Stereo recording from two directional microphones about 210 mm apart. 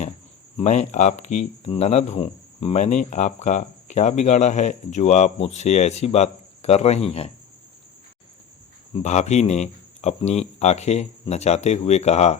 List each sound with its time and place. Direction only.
0.5 s speech: 35° left (ahead or behind)
8.9 s speech: 35° left (ahead or behind)